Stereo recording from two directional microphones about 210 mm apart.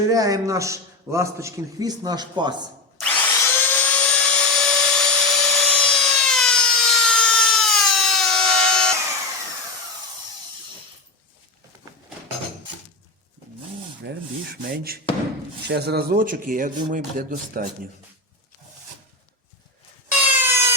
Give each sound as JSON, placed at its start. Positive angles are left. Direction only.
{"t": 0.1, "sound": "a man's voice", "side_deg": -15}
{"t": 3.0, "sound": "drill", "side_deg": 10}
{"t": 14.0, "sound": "rub", "side_deg": -50}
{"t": 15.6, "sound": "speech", "side_deg": -50}
{"t": 20.1, "sound": "a sound", "side_deg": -10}